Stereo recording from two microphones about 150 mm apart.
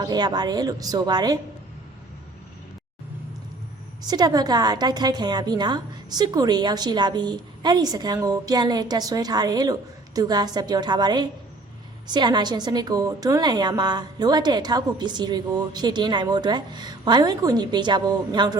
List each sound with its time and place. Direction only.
0.0 s a woman's voice: 25° right (ahead or behind)
4.0 s a woman's voice: 25° right (ahead or behind)